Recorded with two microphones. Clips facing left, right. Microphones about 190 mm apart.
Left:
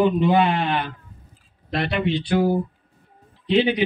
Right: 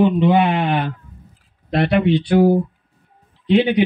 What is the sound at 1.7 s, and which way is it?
A man's voice, 55° right (ahead or behind).